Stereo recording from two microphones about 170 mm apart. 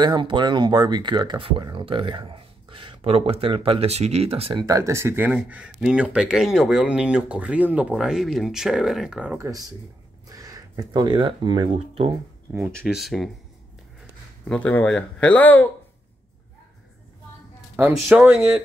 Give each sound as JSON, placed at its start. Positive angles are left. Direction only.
{"t": 0.0, "sound": "speech", "side_deg": -25}
{"t": 4.6, "sound": "speech", "side_deg": -20}
{"t": 9.5, "sound": "speech", "side_deg": -20}
{"t": 11.7, "sound": "speech", "side_deg": -35}
{"t": 12.7, "sound": "speech", "side_deg": 0}
{"t": 14.5, "sound": "speech", "side_deg": 10}
{"t": 17.7, "sound": "speech", "side_deg": -10}